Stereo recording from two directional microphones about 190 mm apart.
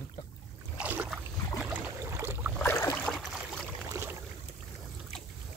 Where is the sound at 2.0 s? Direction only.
10° right (ahead or behind).